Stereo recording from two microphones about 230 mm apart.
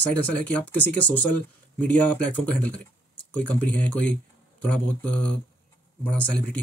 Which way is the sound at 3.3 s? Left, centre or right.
Centre.